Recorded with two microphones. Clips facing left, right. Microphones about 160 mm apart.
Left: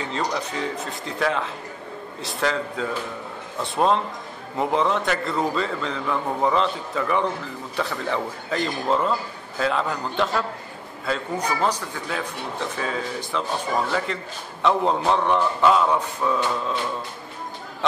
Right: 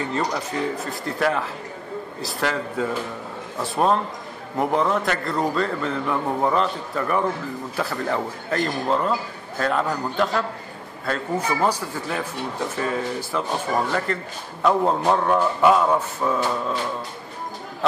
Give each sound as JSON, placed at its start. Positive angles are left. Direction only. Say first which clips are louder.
{"t": 0.0, "sound": "a man's voice", "louder": "right 1 dB", "side_deg": -5}
{"t": 14.6, "sound": "speech", "louder": "right 1 dB", "side_deg": -10}